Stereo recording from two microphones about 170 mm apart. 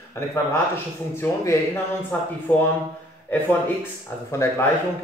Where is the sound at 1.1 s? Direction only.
15° left (ahead or behind).